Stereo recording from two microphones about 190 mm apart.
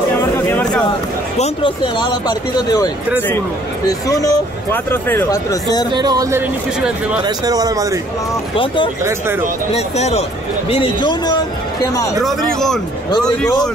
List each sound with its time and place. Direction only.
0.2 s a sound: 10° left (ahead or behind)
1.4 s speech: 25° left (ahead or behind)
5.9 s speech: 20° right (ahead or behind)
8.5 s speech: 25° left (ahead or behind)
9.0 s speech: 10° right (ahead or behind)
9.8 s speech: 35° left (ahead or behind); by 12.1 s 15° left (ahead or behind)
12.2 s speech: centre (ahead or behind)